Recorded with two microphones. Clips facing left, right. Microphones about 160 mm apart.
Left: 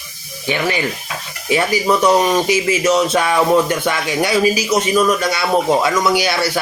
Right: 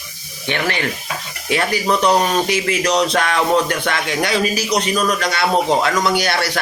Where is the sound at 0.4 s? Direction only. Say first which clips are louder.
Left 2 dB; 10° left (ahead or behind).